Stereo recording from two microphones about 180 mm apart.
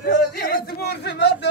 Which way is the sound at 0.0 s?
60° left (ahead or behind).